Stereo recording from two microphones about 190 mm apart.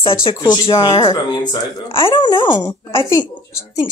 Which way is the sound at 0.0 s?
30° left (ahead or behind).